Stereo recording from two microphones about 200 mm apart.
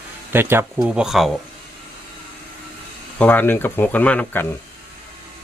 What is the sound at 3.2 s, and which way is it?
Speech, 10° left (ahead or behind).